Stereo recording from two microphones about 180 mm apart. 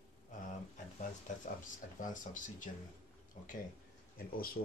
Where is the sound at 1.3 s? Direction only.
45° left (ahead or behind).